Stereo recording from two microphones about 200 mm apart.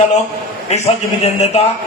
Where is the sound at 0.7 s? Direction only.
35° left (ahead or behind).